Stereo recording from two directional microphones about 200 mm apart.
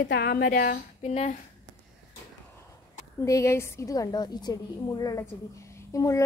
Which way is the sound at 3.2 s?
15° left (ahead or behind).